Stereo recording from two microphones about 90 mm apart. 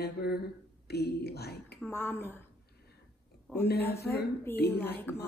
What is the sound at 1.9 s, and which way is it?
Speech, 25° left (ahead or behind).